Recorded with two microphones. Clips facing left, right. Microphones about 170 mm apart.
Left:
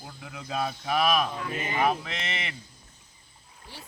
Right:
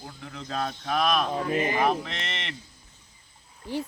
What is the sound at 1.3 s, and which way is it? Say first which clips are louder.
Speech: right 7 dB; 40° right (ahead or behind).